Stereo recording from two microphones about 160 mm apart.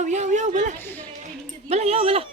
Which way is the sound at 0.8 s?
10° left (ahead or behind).